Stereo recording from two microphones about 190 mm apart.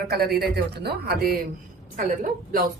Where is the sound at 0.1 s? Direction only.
55° right (ahead or behind).